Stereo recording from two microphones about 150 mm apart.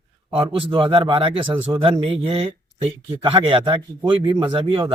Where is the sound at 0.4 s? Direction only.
35° right (ahead or behind).